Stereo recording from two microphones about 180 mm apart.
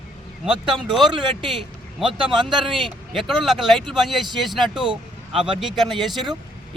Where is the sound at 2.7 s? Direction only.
Centre (ahead or behind).